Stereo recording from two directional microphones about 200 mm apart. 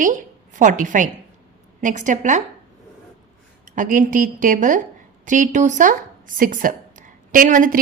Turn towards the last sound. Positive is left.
turn(degrees=-40)  # may be behind; listen again after turning